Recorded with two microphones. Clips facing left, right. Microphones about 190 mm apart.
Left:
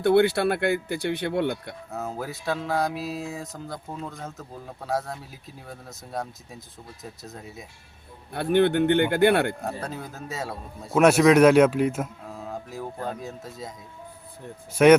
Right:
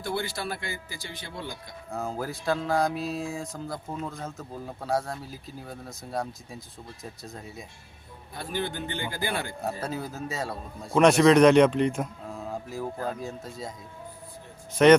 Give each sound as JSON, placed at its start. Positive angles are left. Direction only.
{"t": 0.0, "sound": "speech", "side_deg": 65}
{"t": 1.9, "sound": "music", "side_deg": 5}
{"t": 8.3, "sound": "speech", "side_deg": 65}
{"t": 9.6, "sound": "music", "side_deg": -5}
{"t": 14.8, "sound": "speech", "side_deg": 10}